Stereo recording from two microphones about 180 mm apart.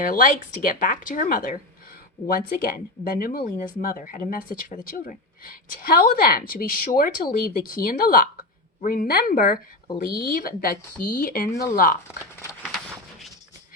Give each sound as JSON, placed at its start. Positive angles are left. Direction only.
{"t": 0.0, "sound": "speech", "side_deg": 50}
{"t": 12.0, "sound": "speech", "side_deg": 15}